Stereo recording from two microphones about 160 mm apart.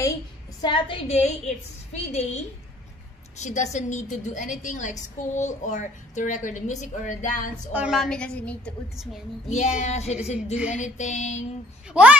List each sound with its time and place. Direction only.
0.6 s a woman's voice: 30° left (ahead or behind); by 7.7 s 50° left (ahead or behind)
7.7 s a woman's voice: 5° right (ahead or behind)
9.6 s a woman's voice: 45° left (ahead or behind)
11.9 s a woman's voice: 10° right (ahead or behind)